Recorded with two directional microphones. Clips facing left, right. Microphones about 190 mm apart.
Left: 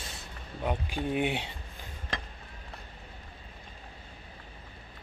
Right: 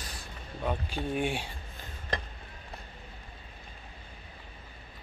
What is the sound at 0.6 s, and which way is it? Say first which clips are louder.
Speech: left 1 dB; 15° left (ahead or behind).